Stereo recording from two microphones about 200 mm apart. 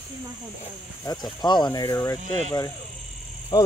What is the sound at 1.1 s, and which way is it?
Speech, 15° left (ahead or behind).